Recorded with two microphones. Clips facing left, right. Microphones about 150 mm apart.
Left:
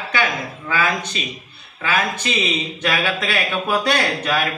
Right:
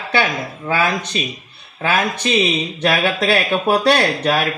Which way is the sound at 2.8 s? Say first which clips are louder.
Right 5 dB; 35° right (ahead or behind).